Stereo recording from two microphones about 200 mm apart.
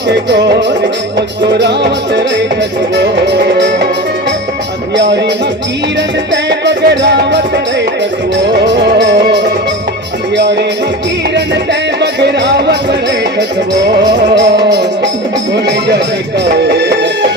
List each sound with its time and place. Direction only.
0.3 s music: 60° right (ahead or behind)
1.5 s music: 60° right (ahead or behind)
6.3 s music: 60° right (ahead or behind)
8.4 s music: 60° right (ahead or behind)
14.3 s music: 60° right (ahead or behind)